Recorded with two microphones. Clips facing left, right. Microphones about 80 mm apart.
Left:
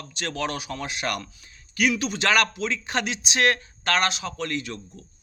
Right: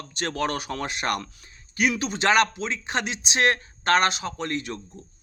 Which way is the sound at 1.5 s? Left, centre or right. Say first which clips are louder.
Left 1 dB; right.